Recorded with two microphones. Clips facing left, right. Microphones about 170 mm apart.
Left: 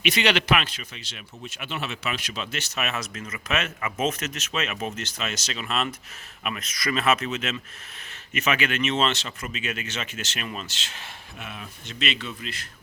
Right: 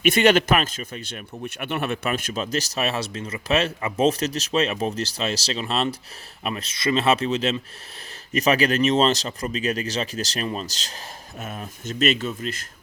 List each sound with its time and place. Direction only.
0.0 s a man's voice: 50° right (ahead or behind)